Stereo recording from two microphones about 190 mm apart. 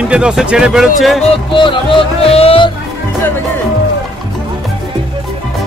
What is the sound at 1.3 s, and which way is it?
Speech, 25° left (ahead or behind).